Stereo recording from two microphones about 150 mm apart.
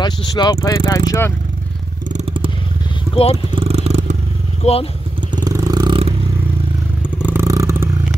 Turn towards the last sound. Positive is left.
turn(degrees=-20)  # may be behind; listen again after turning